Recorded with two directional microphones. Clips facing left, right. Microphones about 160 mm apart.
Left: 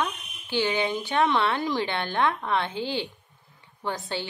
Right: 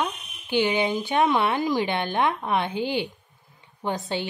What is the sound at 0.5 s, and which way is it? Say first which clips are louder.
Speech: right 3 dB; 15° right (ahead or behind).